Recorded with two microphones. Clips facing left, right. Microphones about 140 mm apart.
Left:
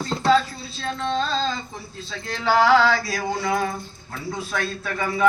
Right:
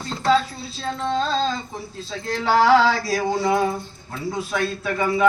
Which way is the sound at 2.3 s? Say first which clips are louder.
Right 1 dB; 35° right (ahead or behind).